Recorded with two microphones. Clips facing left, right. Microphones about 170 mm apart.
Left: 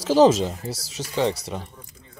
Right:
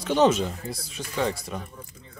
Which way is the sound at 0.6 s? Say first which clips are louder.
Left 3 dB; 85° left.